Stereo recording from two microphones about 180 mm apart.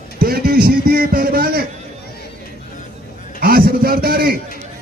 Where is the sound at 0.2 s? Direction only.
60° right (ahead or behind).